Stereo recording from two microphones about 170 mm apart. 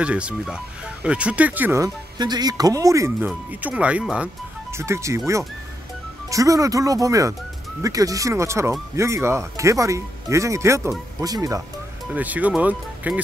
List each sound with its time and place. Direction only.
0.0 s speech: 5° right (ahead or behind)
2.1 s speech: 25° right (ahead or behind)
12.1 s speech: 10° right (ahead or behind)